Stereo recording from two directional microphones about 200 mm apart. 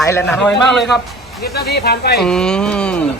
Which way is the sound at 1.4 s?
50° left (ahead or behind).